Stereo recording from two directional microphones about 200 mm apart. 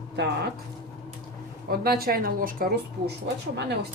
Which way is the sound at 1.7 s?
50° right (ahead or behind).